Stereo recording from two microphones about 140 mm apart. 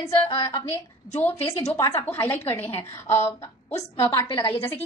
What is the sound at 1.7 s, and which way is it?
A woman's voice, 20° left (ahead or behind).